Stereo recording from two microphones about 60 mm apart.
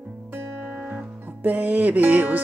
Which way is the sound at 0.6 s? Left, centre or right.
Right.